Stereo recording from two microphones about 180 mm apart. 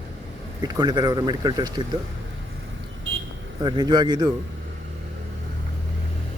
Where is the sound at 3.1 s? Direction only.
90° right.